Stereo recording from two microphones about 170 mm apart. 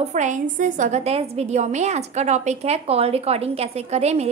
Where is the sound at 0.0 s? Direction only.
45° right (ahead or behind).